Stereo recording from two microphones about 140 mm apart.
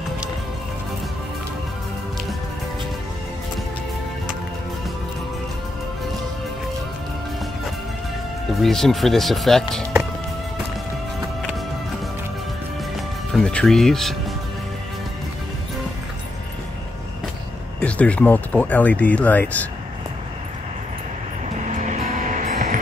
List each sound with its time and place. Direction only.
8.6 s speech: centre (ahead or behind)
12.9 s music: 5° left (ahead or behind)
17.7 s speech: 10° left (ahead or behind)
21.6 s music: 60° right (ahead or behind)